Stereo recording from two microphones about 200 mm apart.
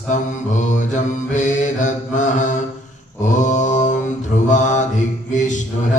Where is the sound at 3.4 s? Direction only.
40° left (ahead or behind).